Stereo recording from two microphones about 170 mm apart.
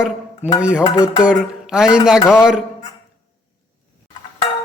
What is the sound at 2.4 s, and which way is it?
Speech, 5° right (ahead or behind).